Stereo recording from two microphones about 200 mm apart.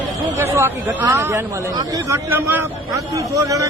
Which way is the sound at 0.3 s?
10° right (ahead or behind).